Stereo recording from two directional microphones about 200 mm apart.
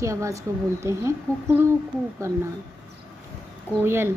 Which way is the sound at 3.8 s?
10° right (ahead or behind).